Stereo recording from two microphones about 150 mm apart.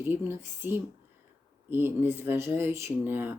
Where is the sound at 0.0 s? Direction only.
15° right (ahead or behind).